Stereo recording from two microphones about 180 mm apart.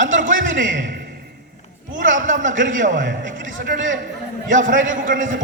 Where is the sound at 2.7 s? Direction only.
45° right (ahead or behind).